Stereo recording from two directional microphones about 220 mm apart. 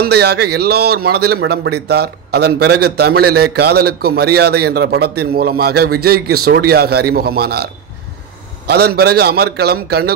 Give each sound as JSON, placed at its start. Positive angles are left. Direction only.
{"t": 0.0, "sound": "a man's voice", "side_deg": -45}